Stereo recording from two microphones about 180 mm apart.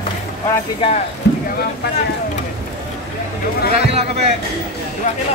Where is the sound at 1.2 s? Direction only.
70° left (ahead or behind).